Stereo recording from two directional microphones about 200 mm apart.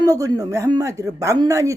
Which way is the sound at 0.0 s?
20° right (ahead or behind).